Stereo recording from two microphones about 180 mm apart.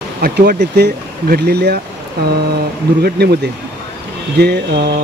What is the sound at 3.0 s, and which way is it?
Speech, 65° right (ahead or behind).